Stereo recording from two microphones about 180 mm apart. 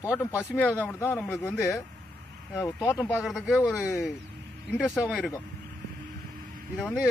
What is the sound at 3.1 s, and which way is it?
Speech, centre (ahead or behind).